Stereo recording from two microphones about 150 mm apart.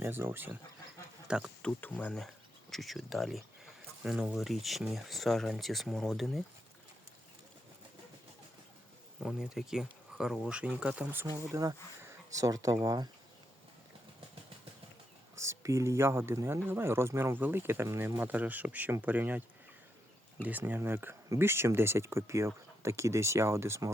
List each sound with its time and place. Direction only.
0.0 s speech: 15° right (ahead or behind)
1.6 s speech: 10° left (ahead or behind)
9.2 s speech: 5° right (ahead or behind); by 13.1 s 25° right (ahead or behind)
15.4 s speech: 20° right (ahead or behind)
20.4 s speech: 10° right (ahead or behind)